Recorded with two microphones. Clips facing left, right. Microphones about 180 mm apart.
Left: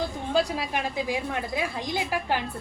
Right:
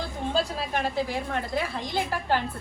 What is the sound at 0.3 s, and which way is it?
A woman's voice, 15° left (ahead or behind).